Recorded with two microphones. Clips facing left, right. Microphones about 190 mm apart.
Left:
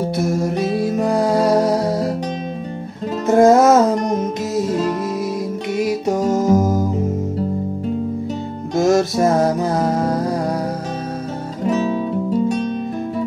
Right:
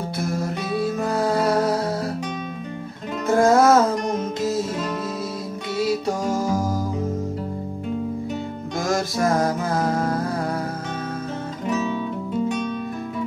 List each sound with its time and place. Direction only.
0.1 s music: 20° left (ahead or behind)
3.3 s music: 20° left (ahead or behind)
5.8 s music: 25° left (ahead or behind)
8.7 s music: 20° left (ahead or behind)
11.6 s guitar: 35° left (ahead or behind)